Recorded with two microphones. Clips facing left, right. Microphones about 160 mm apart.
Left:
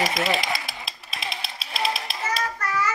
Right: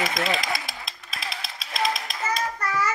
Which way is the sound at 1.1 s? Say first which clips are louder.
Left 2 dB; 25° left (ahead or behind).